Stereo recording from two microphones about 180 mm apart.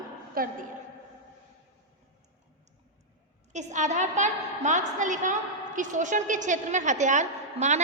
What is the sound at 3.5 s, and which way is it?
A woman's voice, 40° right (ahead or behind).